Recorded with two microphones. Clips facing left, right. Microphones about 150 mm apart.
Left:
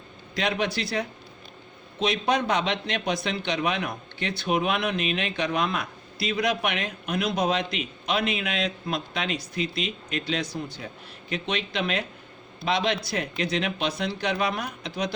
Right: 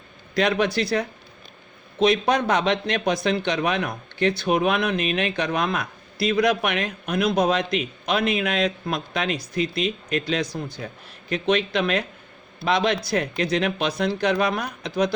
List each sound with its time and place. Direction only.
0.3 s a man's voice: 50° right (ahead or behind)